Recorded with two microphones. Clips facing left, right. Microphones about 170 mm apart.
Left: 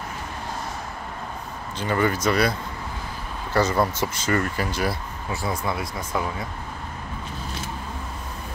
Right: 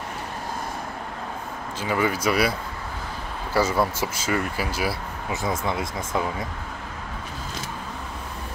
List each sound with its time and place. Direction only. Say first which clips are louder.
1.8 s speech: left 1 dB; 5° right (ahead or behind)
3.5 s speech: left 1 dB; 5° right (ahead or behind)
5.3 s speech: right 1 dB; 20° right (ahead or behind)